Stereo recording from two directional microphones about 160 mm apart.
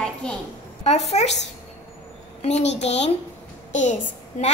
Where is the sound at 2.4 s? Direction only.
40° left (ahead or behind).